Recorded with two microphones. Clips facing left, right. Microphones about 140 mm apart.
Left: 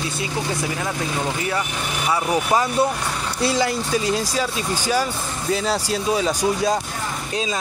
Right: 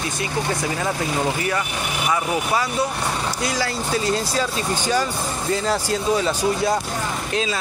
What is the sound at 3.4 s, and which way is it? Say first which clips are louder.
Speech: left 6 dB; 25° left (ahead or behind).